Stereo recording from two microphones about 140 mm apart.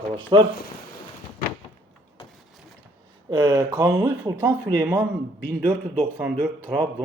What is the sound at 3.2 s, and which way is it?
Speech, 30° right (ahead or behind).